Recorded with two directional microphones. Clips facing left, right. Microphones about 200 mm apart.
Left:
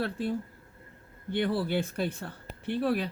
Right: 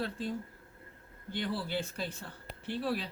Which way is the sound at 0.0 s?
65° left (ahead or behind).